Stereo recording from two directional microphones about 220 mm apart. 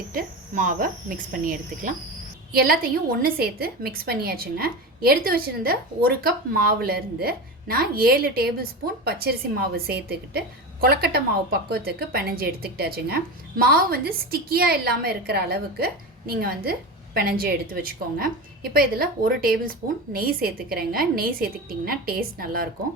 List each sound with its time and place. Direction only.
0.1 s a woman's voice: 40° right (ahead or behind)